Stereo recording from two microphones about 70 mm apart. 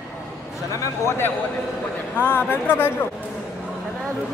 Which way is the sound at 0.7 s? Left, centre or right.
Left.